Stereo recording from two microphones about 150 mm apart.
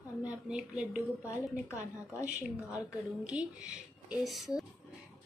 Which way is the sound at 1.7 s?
20° left (ahead or behind).